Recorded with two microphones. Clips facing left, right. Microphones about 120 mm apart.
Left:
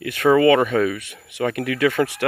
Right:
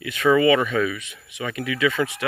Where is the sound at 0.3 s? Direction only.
45° left (ahead or behind).